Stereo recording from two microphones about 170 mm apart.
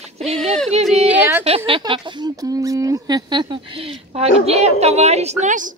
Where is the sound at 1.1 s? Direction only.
10° right (ahead or behind).